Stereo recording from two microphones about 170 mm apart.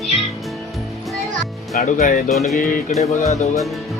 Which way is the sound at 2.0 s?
55° left (ahead or behind).